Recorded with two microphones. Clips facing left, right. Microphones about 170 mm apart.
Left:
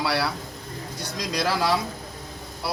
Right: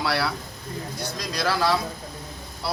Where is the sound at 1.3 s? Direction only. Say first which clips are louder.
Even; 15° left (ahead or behind).